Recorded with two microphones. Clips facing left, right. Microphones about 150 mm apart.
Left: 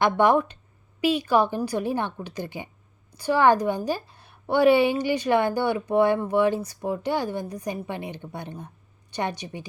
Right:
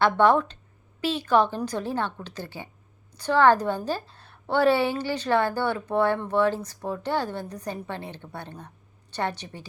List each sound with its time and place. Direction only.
0.0 s a woman's voice: 15° left (ahead or behind)